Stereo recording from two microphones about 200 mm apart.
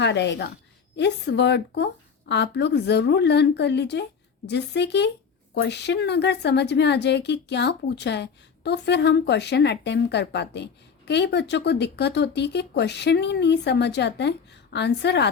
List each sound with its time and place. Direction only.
0.0 s a woman's voice: 60° left (ahead or behind)